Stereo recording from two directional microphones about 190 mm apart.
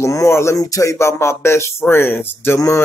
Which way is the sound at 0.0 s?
15° left (ahead or behind).